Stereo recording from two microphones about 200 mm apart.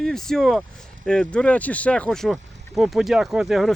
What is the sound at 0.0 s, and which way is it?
Speech, centre (ahead or behind).